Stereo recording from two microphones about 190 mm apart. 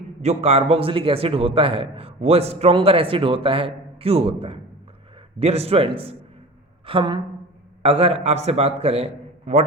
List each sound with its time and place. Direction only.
0.2 s a man's voice: 35° right (ahead or behind)